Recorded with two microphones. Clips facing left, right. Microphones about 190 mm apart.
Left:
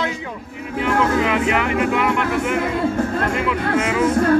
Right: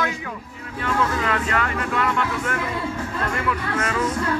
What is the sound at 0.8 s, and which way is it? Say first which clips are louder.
A man's voice: left 5 dB; 15° left (ahead or behind).